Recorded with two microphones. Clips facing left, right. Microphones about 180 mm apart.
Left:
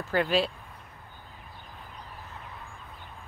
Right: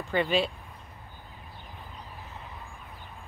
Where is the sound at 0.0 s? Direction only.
Centre (ahead or behind).